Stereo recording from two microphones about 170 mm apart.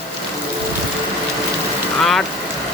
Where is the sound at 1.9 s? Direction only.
Centre (ahead or behind).